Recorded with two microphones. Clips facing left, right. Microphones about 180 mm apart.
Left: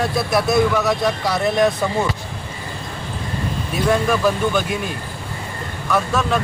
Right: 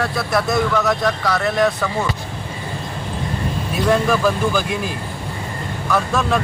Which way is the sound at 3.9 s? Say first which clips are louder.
Right 1 dB; centre (ahead or behind).